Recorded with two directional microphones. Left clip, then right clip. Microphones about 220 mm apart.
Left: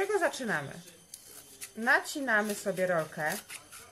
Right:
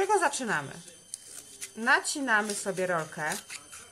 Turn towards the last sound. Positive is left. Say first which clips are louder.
# even
turn(degrees=-20)  # may be behind; listen again after turning